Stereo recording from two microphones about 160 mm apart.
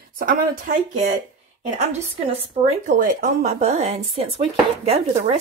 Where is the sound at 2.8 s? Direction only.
55° right (ahead or behind).